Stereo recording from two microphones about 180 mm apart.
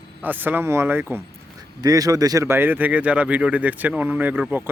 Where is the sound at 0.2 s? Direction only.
10° right (ahead or behind).